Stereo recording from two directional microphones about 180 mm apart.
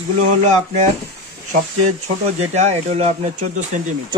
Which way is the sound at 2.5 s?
40° right (ahead or behind).